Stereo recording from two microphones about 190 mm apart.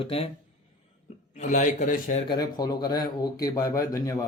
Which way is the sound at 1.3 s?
40° left (ahead or behind).